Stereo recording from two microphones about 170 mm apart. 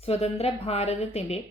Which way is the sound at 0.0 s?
35° left (ahead or behind).